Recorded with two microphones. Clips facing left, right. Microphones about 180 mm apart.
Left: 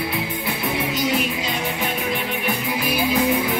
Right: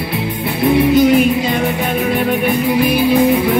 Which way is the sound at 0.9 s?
55° right (ahead or behind).